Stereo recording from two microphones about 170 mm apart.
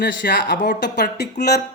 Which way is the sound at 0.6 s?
90° left.